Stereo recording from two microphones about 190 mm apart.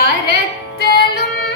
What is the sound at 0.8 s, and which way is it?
Music, 55° left (ahead or behind).